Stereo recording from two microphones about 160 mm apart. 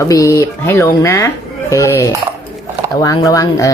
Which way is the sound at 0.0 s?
20° left (ahead or behind).